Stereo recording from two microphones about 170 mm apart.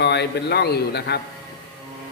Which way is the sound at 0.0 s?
75° left (ahead or behind).